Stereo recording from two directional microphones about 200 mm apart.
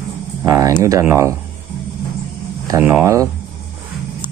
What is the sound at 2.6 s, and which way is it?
Speech, 10° right (ahead or behind).